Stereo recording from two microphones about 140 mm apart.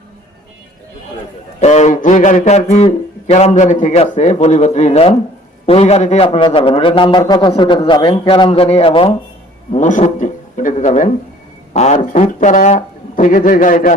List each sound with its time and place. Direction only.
1.6 s a man's voice: 55° left (ahead or behind)
6.2 s a man's voice: 40° left (ahead or behind)
9.7 s a man's voice: 60° left (ahead or behind); by 13.9 s 75° left (ahead or behind)